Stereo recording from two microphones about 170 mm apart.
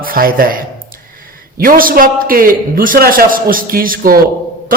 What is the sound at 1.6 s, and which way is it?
Speech, 55° right (ahead or behind).